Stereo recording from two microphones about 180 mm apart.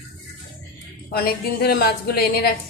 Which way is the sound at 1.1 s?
60° left (ahead or behind).